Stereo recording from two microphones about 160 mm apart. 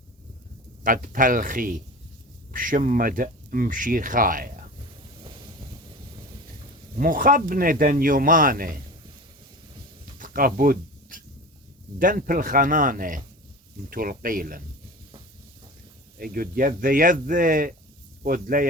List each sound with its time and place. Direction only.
0.9 s speech: 60° right (ahead or behind)
5.2 s wind noise: 30° right (ahead or behind)
6.9 s speech: 60° right (ahead or behind)
10.2 s a sound: 60° right (ahead or behind)
11.9 s speech: 60° right (ahead or behind)
16.1 s speech: 65° right (ahead or behind)